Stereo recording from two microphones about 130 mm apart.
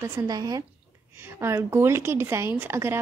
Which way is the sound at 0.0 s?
25° right (ahead or behind).